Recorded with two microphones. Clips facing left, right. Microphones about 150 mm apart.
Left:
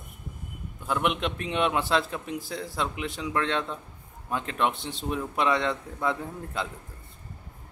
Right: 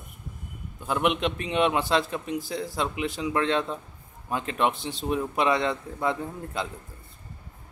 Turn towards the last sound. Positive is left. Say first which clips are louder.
# right 1 dB
turn(degrees=0)  # may be behind; listen again after turning